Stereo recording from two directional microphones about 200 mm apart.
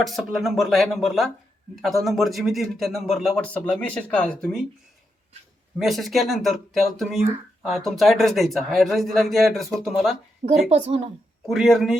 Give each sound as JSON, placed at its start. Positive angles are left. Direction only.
{"t": 0.0, "sound": "a man's voice", "side_deg": 0}
{"t": 5.8, "sound": "a man's voice", "side_deg": 0}
{"t": 10.4, "sound": "speech", "side_deg": -30}
{"t": 11.4, "sound": "a man's voice", "side_deg": 0}